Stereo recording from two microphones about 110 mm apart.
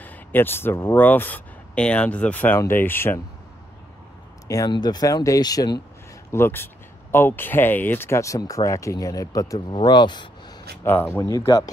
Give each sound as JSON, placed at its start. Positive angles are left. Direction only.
{"t": 0.0, "sound": "speech", "side_deg": 15}
{"t": 4.5, "sound": "speech", "side_deg": 35}
{"t": 6.3, "sound": "speech", "side_deg": 20}
{"t": 9.7, "sound": "speech", "side_deg": 45}
{"t": 10.8, "sound": "speech", "side_deg": 20}
{"t": 11.2, "sound": "speech", "side_deg": 30}